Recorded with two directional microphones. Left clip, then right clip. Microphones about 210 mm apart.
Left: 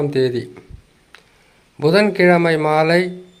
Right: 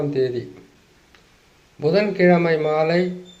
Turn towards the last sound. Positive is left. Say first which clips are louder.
# left 4 dB
turn(degrees=30)  # may be behind; listen again after turning